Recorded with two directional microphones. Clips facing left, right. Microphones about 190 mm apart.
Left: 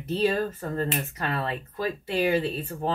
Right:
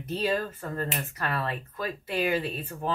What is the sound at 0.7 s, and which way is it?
Speech, 20° left (ahead or behind).